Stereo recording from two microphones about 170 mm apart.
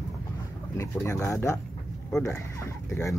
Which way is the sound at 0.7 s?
15° left (ahead or behind).